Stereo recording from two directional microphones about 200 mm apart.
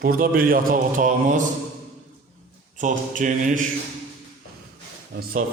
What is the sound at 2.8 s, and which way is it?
Speech, 40° right (ahead or behind).